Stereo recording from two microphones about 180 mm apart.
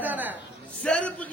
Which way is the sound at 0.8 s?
5° left (ahead or behind).